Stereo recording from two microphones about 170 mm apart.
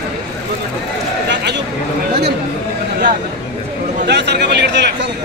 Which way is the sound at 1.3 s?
90° right.